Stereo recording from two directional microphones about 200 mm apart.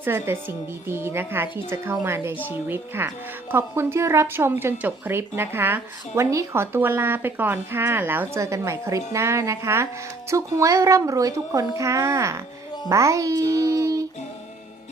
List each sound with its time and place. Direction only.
0.0 s speech: 10° right (ahead or behind)